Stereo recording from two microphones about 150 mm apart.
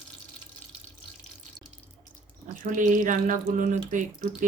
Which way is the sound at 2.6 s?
60° right (ahead or behind).